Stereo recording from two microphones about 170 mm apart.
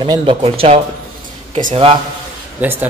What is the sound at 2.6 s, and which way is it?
Speech, 10° right (ahead or behind).